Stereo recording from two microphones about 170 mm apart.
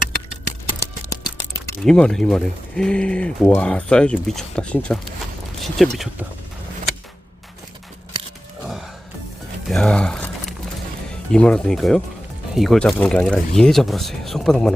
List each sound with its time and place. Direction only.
0.8 s a sound: 20° left (ahead or behind)
1.8 s speech: 5° left (ahead or behind)
9.6 s speech: 5° left (ahead or behind)